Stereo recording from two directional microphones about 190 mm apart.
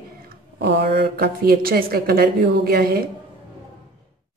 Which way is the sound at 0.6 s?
60° right (ahead or behind).